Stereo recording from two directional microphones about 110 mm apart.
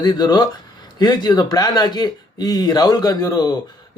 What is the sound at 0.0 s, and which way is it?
Speech, 40° left (ahead or behind).